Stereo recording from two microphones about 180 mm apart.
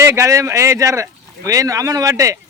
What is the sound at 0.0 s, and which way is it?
Speech, 15° right (ahead or behind).